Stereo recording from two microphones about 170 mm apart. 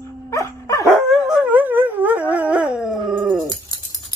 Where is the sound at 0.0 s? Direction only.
15° left (ahead or behind).